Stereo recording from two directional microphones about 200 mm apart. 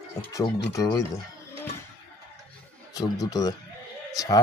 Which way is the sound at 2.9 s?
20° left (ahead or behind).